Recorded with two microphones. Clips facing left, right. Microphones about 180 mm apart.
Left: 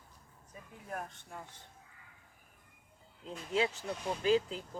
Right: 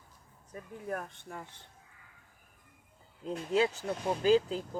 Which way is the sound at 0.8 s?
65° right (ahead or behind).